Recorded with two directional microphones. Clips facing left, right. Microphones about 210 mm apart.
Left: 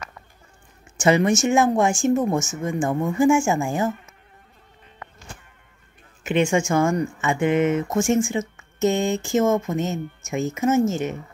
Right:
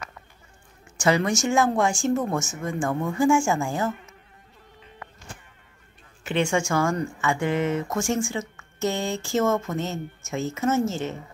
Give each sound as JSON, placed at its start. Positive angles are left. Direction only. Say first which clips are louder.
{"t": 0.9, "sound": "speech", "louder": "left 4 dB", "side_deg": 20}
{"t": 6.2, "sound": "speech", "louder": "left 4 dB", "side_deg": 20}